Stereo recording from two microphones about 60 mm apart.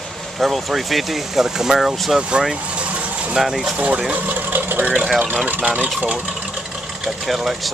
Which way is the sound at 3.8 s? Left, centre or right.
Right.